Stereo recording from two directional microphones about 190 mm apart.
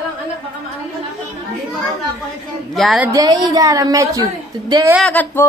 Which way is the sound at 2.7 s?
Centre (ahead or behind).